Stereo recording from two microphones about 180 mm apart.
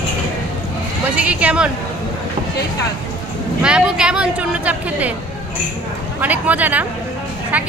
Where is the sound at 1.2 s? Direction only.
5° right (ahead or behind).